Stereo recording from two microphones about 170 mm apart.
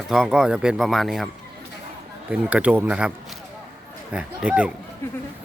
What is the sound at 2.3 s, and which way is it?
Speech, 5° right (ahead or behind).